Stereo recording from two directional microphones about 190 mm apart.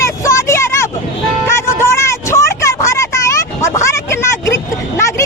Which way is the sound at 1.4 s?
15° left (ahead or behind).